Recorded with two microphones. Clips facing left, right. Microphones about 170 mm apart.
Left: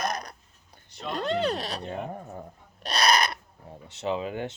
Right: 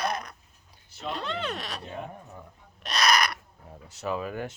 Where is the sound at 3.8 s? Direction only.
25° left (ahead or behind).